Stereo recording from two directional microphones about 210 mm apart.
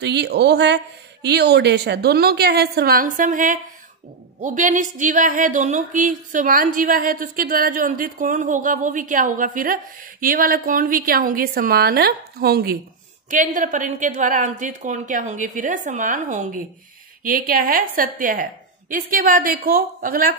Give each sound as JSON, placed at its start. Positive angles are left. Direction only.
{"t": 0.0, "sound": "a woman's voice", "side_deg": -55}